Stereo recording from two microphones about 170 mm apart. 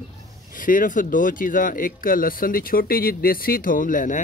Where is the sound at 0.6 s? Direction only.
50° left (ahead or behind).